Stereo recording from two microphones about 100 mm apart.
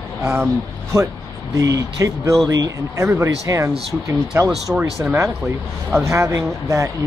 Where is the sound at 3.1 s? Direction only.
30° right (ahead or behind).